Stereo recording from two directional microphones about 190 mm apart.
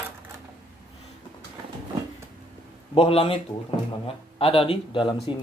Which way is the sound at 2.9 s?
30° left (ahead or behind).